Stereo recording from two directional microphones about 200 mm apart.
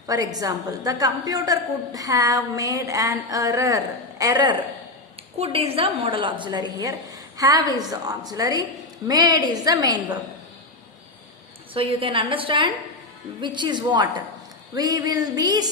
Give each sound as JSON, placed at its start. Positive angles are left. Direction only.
{"t": 0.1, "sound": "a woman's voice", "side_deg": -20}
{"t": 5.4, "sound": "a woman's voice", "side_deg": -30}
{"t": 11.7, "sound": "a woman's voice", "side_deg": -25}